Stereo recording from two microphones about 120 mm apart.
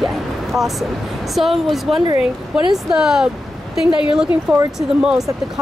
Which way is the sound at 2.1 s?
40° right (ahead or behind).